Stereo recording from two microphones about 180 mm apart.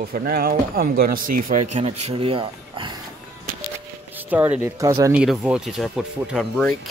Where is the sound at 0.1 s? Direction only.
55° right (ahead or behind).